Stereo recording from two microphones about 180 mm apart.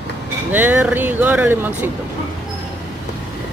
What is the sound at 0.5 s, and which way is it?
Speech, 10° right (ahead or behind).